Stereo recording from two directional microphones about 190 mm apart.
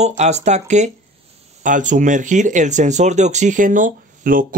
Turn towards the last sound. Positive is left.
turn(degrees=-45)  # may be behind; listen again after turning